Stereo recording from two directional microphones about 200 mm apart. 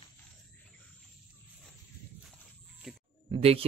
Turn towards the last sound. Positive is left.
turn(degrees=-30)  # may be behind; listen again after turning